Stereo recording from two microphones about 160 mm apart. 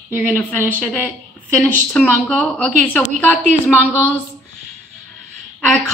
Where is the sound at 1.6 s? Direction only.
5° left (ahead or behind).